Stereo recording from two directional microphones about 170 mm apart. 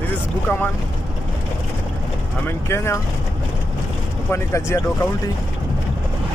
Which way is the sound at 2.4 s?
15° left (ahead or behind).